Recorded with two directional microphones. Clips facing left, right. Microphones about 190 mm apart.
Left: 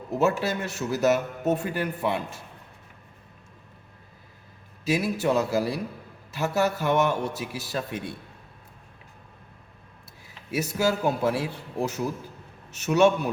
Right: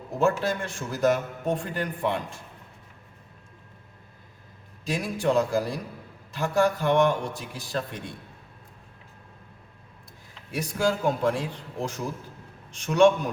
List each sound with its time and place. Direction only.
0.2 s a man's voice: 5° left (ahead or behind)
4.9 s a man's voice: 5° left (ahead or behind)
10.5 s a man's voice: 5° left (ahead or behind)